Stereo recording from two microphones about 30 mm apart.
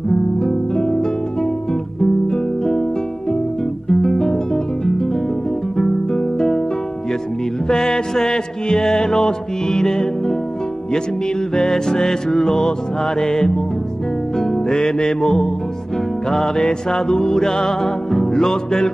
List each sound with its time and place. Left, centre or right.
0.1 s music: centre
3.9 s guitar: centre
5.8 s guitar: centre
7.6 s music: centre
11.5 s music: centre